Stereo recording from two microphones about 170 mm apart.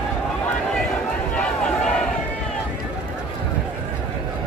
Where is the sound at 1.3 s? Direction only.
5° left (ahead or behind).